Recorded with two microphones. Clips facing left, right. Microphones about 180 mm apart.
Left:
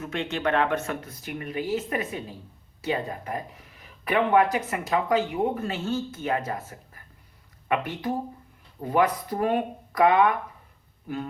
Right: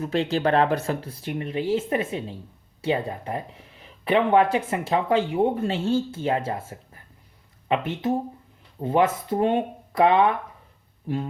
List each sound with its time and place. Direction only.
0.0 s speech: 35° right (ahead or behind)